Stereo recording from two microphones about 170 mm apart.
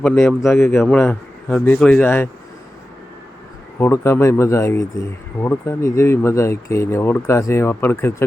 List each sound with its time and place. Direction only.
0.0 s speech: 10° left (ahead or behind)
3.8 s speech: 15° left (ahead or behind)